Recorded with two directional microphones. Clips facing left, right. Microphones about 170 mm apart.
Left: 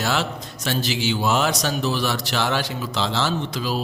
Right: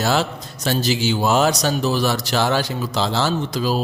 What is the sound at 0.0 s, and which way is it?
A man's voice, 40° right (ahead or behind).